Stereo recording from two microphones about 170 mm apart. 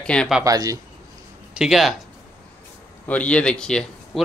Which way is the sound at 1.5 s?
Centre (ahead or behind).